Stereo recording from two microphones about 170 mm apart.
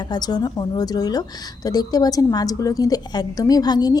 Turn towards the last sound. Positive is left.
turn(degrees=25)  # may be behind; listen again after turning